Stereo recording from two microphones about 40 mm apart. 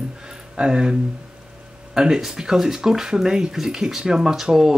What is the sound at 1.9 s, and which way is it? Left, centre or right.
Speech, right.